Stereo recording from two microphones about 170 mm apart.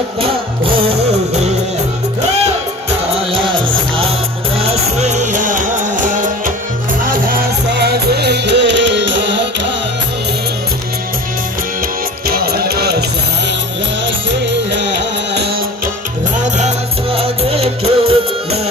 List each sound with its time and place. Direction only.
1.1 s music: 40° right (ahead or behind)
3.4 s music: 30° right (ahead or behind)
4.7 s music: 40° right (ahead or behind)
7.7 s music: 75° right (ahead or behind)
12.3 s music: 65° right (ahead or behind)
14.7 s music: 90° right
16.4 s music: 45° right (ahead or behind)